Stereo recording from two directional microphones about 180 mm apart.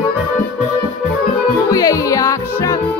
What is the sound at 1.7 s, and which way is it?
Music, 20° left (ahead or behind).